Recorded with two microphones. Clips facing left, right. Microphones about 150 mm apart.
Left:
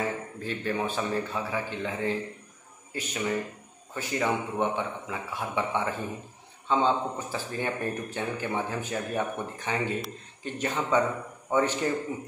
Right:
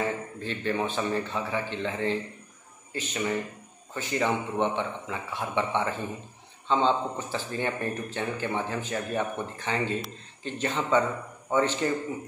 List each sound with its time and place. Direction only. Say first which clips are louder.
0.0 s a man's voice: right 1 dB; 5° left (ahead or behind)